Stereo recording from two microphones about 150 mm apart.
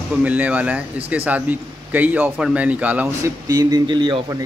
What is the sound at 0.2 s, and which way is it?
A man's voice, 10° right (ahead or behind).